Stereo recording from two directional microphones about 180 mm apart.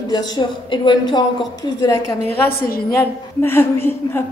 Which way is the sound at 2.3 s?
55° left (ahead or behind).